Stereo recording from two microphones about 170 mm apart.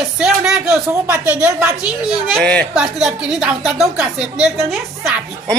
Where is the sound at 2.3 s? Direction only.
5° left (ahead or behind).